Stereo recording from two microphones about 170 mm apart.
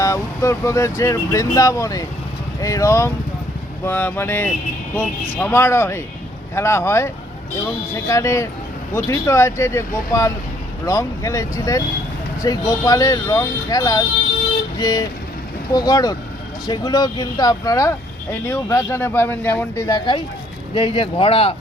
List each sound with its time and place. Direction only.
0.0 s speech: 15° left (ahead or behind); by 21.5 s 35° left (ahead or behind)